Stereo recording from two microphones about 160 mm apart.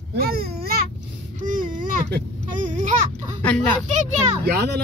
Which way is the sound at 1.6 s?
55° right (ahead or behind).